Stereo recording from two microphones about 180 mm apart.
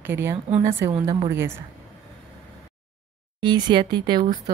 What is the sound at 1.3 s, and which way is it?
Speech, 15° right (ahead or behind).